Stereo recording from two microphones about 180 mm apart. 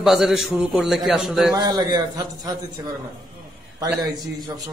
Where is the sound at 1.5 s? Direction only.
20° right (ahead or behind).